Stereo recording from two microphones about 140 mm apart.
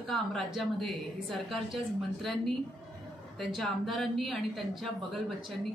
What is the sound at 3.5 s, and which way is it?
Speech, centre (ahead or behind).